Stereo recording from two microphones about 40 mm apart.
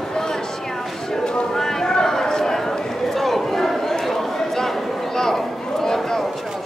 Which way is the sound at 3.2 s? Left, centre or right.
Centre.